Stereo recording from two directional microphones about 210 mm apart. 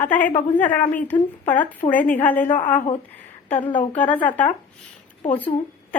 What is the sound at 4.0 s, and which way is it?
Speech, 5° left (ahead or behind).